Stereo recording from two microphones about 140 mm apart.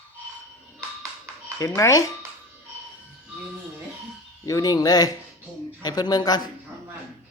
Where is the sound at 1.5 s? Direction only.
25° left (ahead or behind).